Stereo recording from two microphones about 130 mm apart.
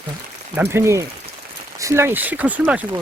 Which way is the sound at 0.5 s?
20° right (ahead or behind).